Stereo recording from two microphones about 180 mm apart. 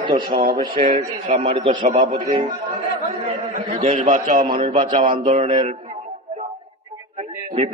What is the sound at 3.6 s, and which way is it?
Speech, 45° right (ahead or behind).